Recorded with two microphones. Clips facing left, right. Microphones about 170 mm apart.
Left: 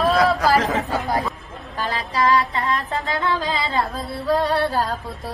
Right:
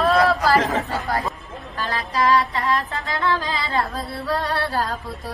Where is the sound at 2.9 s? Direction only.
20° left (ahead or behind).